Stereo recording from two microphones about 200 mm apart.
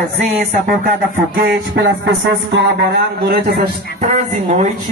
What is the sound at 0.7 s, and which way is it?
Music, 50° right (ahead or behind).